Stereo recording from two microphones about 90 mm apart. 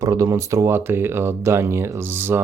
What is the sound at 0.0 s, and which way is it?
Speech, 35° right (ahead or behind).